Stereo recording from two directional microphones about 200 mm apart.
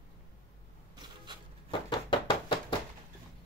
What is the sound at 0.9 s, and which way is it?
Vehicle, 20° right (ahead or behind).